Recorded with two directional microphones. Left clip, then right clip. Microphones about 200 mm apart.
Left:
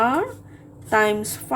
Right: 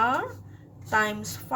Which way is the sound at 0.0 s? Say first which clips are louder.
Left 4 dB; 30° left (ahead or behind).